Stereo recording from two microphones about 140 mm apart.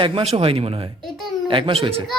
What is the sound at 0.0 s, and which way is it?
Speech, 40° right (ahead or behind).